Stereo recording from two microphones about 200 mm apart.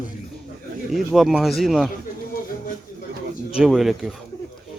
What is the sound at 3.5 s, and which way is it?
Speech, centre (ahead or behind).